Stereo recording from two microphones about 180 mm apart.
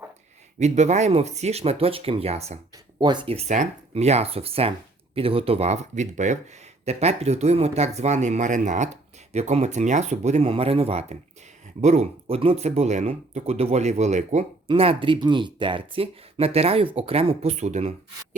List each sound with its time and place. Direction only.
0.6 s speech: 40° right (ahead or behind)
2.7 s speech: 25° right (ahead or behind)